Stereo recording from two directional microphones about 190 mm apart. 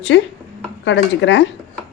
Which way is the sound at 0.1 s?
75° left (ahead or behind).